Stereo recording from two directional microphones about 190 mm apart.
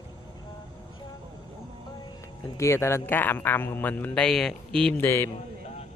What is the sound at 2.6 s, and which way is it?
Speech, 15° left (ahead or behind).